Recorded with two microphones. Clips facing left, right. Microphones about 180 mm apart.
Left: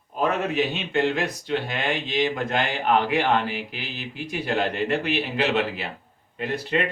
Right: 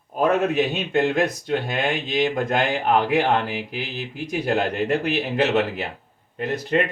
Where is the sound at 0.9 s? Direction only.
45° right (ahead or behind).